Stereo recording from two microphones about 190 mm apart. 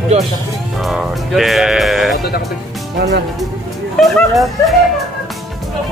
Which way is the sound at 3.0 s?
60° right (ahead or behind).